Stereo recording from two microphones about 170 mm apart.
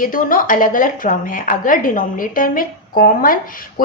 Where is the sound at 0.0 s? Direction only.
55° left (ahead or behind).